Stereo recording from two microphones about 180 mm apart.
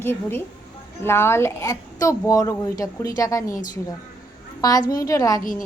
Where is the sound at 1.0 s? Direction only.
15° left (ahead or behind).